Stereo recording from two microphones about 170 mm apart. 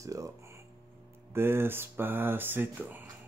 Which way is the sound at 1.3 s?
15° right (ahead or behind).